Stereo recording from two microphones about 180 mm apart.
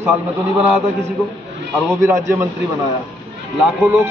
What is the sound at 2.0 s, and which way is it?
A man's voice, 15° right (ahead or behind).